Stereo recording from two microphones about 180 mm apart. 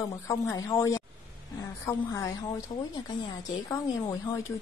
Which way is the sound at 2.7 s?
35° left (ahead or behind).